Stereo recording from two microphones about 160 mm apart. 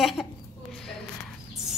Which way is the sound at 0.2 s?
15° left (ahead or behind).